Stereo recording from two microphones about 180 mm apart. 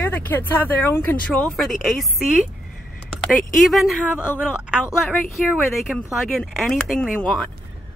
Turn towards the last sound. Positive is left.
turn(degrees=5)  # may be behind; listen again after turning